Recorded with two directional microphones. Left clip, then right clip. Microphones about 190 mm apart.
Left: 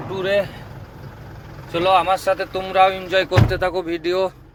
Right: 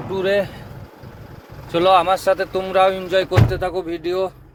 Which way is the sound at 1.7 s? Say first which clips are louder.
Right 2 dB; 70° right (ahead or behind).